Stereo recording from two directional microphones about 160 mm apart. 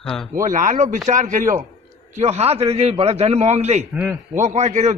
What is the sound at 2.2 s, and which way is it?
A man's voice, 40° right (ahead or behind).